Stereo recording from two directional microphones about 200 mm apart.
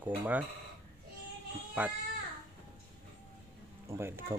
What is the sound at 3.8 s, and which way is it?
Speech, 10° right (ahead or behind).